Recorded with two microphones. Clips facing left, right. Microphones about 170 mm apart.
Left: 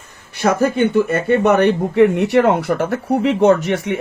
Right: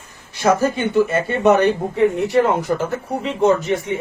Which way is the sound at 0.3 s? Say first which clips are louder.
Left 2 dB; 60° left (ahead or behind).